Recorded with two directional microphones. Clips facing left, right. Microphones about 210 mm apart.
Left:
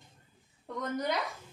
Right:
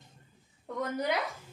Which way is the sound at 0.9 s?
10° right (ahead or behind).